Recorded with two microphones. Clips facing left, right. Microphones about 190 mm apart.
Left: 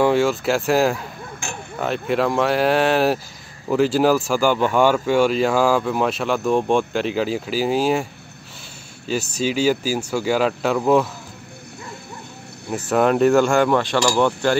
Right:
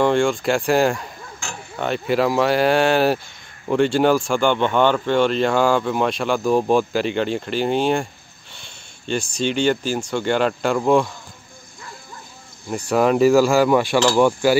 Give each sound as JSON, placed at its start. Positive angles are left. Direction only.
{"t": 0.0, "sound": "speech", "side_deg": 5}
{"t": 12.6, "sound": "speech", "side_deg": 5}